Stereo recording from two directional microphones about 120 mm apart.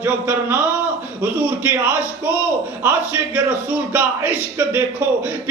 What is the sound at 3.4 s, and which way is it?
A man's voice, 15° right (ahead or behind).